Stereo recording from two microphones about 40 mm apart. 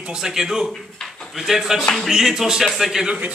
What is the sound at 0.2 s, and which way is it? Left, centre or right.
A man's voice, centre.